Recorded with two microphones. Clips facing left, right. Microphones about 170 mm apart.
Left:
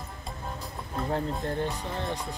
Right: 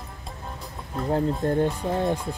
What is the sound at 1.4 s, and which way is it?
Speech, 50° right (ahead or behind).